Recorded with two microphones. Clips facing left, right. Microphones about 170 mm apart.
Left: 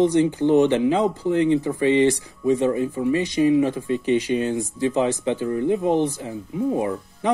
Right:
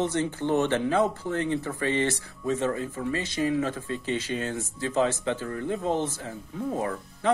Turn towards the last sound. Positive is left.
turn(degrees=15)  # may be behind; listen again after turning